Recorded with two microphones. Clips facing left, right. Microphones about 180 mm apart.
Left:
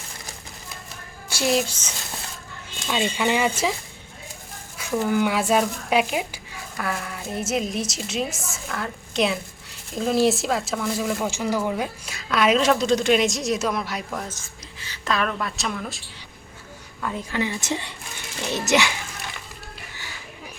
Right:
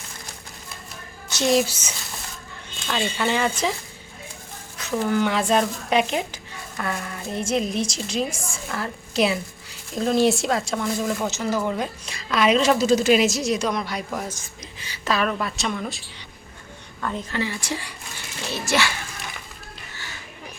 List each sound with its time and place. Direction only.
1.3 s speech: 5° left (ahead or behind)
2.8 s speech: 10° left (ahead or behind)
4.8 s speech: 10° left (ahead or behind); by 15.0 s 15° right (ahead or behind)
15.0 s speech: 5° right (ahead or behind)
17.0 s speech: 10° left (ahead or behind)